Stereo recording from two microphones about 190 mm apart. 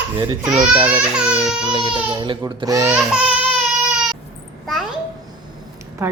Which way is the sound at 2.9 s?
5° right (ahead or behind).